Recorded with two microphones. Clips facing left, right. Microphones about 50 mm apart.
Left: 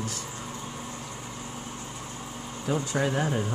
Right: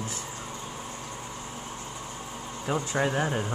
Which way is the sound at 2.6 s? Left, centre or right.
Centre.